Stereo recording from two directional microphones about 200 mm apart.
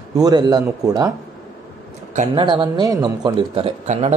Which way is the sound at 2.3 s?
25° right (ahead or behind).